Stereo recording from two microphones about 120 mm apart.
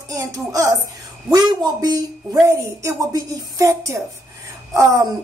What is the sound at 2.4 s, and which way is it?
Speech, 25° right (ahead or behind).